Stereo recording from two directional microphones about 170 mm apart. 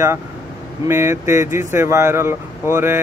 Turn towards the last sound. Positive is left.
turn(degrees=-15)  # may be behind; listen again after turning